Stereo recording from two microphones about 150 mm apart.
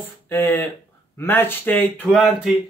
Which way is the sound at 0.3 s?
15° left (ahead or behind).